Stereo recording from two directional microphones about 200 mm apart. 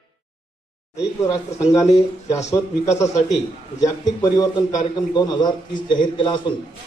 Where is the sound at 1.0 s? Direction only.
15° left (ahead or behind).